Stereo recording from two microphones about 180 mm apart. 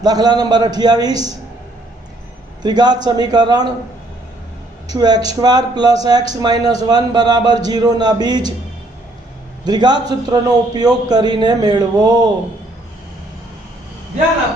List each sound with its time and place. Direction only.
0.0 s a man's voice: 20° right (ahead or behind)
2.6 s a man's voice: 25° right (ahead or behind)
4.9 s a man's voice: 20° right (ahead or behind)
9.6 s a man's voice: 25° right (ahead or behind)